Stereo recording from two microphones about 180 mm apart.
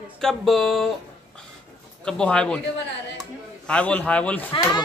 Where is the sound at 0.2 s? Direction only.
Centre (ahead or behind).